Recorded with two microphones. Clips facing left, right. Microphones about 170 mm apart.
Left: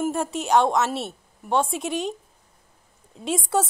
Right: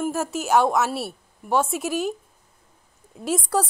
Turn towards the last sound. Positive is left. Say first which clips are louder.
# even
turn(degrees=0)  # may be behind; listen again after turning